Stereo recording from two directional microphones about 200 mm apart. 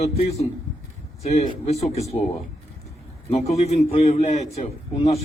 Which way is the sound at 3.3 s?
30° left (ahead or behind).